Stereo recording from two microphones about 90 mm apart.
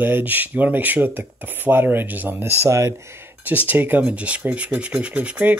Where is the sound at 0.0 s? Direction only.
20° right (ahead or behind).